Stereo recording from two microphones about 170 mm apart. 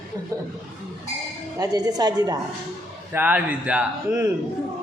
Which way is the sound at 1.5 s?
20° right (ahead or behind).